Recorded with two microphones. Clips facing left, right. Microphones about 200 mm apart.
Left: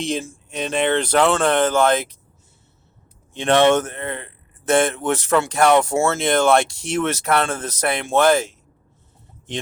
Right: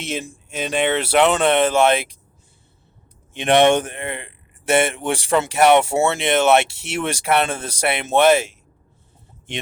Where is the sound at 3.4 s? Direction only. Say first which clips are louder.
Right 1 dB; 15° right (ahead or behind).